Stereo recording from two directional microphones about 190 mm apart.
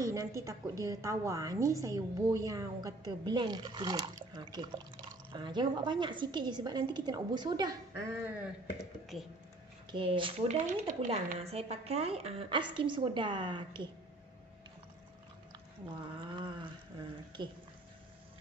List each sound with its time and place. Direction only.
0.0 s a woman's voice: 15° right (ahead or behind); by 9.3 s centre (ahead or behind)
9.8 s a woman's voice: 25° right (ahead or behind)
10.7 s speech: 40° right (ahead or behind); by 13.8 s 25° right (ahead or behind)
16.2 s a sound: 25° right (ahead or behind)
17.4 s a woman's voice: 25° right (ahead or behind)